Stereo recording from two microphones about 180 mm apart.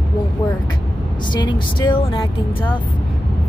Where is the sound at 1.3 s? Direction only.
25° left (ahead or behind).